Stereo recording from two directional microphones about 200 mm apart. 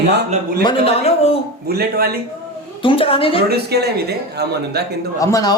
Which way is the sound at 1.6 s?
50° right (ahead or behind).